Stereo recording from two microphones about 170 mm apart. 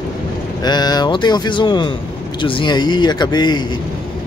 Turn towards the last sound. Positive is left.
turn(degrees=25)  # may be behind; listen again after turning